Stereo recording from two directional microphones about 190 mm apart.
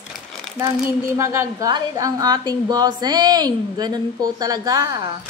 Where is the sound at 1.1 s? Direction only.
15° right (ahead or behind).